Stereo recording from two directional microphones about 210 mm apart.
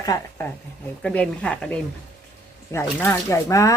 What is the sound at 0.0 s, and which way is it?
Speech, 15° left (ahead or behind).